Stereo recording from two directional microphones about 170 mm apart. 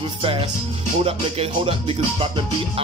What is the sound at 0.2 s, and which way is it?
Music, 35° right (ahead or behind).